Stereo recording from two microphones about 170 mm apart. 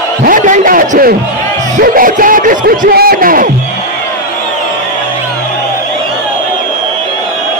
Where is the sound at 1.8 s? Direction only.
55° right (ahead or behind).